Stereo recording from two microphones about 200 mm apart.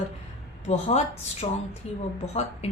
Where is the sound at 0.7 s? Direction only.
35° left (ahead or behind).